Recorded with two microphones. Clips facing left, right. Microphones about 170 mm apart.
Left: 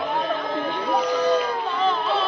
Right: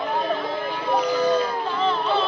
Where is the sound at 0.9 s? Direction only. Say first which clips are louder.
Right 1 dB; 5° right (ahead or behind).